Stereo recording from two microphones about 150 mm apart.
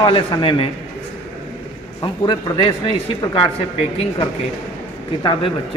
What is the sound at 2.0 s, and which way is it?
A man's voice, 30° left (ahead or behind).